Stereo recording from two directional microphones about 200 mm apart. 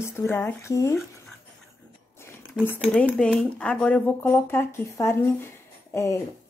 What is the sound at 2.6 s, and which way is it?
A woman's voice, 5° right (ahead or behind).